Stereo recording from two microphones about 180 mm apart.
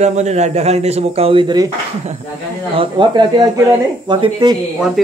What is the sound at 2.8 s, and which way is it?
Speech, 25° right (ahead or behind).